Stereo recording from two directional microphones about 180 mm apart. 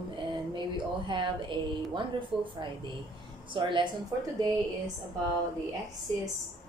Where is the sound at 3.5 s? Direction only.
25° right (ahead or behind).